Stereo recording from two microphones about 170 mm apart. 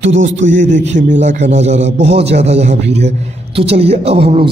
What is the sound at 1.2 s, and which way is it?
A man's voice, 45° right (ahead or behind).